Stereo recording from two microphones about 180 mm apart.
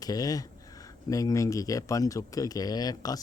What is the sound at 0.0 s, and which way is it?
Speech, 20° left (ahead or behind).